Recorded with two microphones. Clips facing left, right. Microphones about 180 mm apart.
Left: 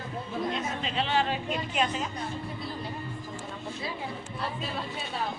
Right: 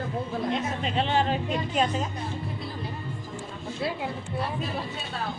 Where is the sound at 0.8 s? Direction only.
50° right (ahead or behind).